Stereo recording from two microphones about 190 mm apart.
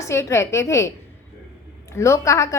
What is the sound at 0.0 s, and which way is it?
Speech, 15° left (ahead or behind).